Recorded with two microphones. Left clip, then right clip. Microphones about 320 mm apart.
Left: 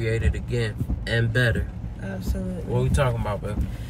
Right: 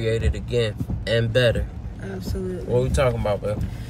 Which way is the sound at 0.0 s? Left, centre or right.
Centre.